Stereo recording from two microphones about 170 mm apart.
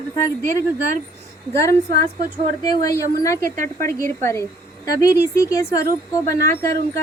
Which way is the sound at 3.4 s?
50° right (ahead or behind).